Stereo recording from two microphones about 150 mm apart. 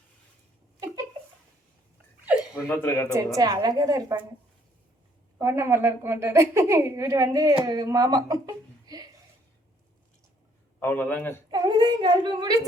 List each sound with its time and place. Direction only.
2.6 s speech: 15° left (ahead or behind)
3.3 s a woman's voice: 25° right (ahead or behind)
5.4 s a woman's voice: 20° right (ahead or behind)
10.8 s speech: 10° left (ahead or behind)
11.5 s a woman's voice: 30° right (ahead or behind)